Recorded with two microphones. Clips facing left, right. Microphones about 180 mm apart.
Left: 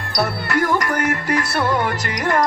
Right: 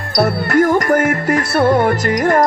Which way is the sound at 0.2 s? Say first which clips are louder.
Right 7 dB; 45° right (ahead or behind).